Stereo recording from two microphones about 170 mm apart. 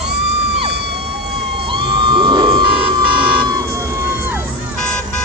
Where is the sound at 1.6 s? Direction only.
30° right (ahead or behind).